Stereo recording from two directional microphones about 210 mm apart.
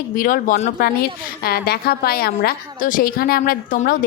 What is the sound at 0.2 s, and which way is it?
A woman's voice, 40° left (ahead or behind).